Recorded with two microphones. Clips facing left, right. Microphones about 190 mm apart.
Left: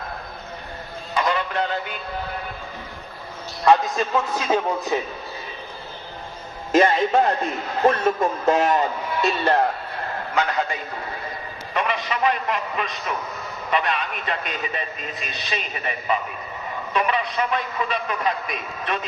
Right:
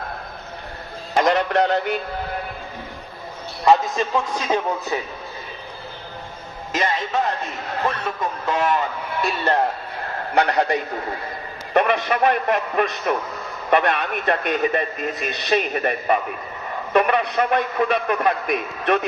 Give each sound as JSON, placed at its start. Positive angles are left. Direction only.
{"t": 1.1, "sound": "music", "side_deg": -75}
{"t": 3.6, "sound": "a man's voice", "side_deg": 0}
{"t": 6.7, "sound": "a man's voice", "side_deg": 50}
{"t": 8.0, "sound": "speech", "side_deg": 40}
{"t": 10.3, "sound": "a man's voice", "side_deg": -70}
{"t": 11.7, "sound": "a man's voice", "side_deg": -55}